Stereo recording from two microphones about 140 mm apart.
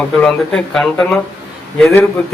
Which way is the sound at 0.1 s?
5° left (ahead or behind).